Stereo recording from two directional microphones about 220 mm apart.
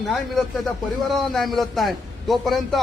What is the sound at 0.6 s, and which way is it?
A man's voice, centre (ahead or behind).